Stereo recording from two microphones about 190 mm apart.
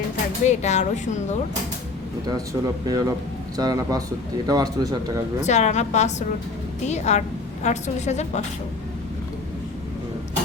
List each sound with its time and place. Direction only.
0.4 s a woman's voice: 35° left (ahead or behind)
2.2 s speech: 20° right (ahead or behind)
5.4 s a woman's voice: 35° left (ahead or behind)